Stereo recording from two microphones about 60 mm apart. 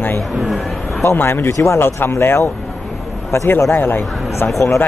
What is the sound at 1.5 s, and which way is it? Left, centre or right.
Speech, left.